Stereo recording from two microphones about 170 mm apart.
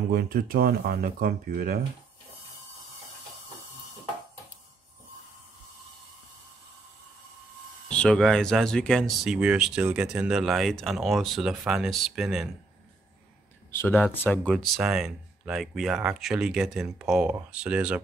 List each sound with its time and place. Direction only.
0.1 s speech: 60° right (ahead or behind)
7.9 s speech: 5° left (ahead or behind)
13.7 s speech: 10° left (ahead or behind)
14.5 s speech: centre (ahead or behind)